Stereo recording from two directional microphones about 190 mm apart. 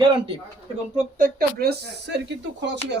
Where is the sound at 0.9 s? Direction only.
50° right (ahead or behind).